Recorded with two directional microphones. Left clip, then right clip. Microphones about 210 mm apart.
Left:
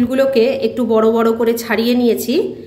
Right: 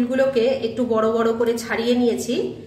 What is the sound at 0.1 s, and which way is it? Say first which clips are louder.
A woman's voice: left 5 dB; 40° left (ahead or behind).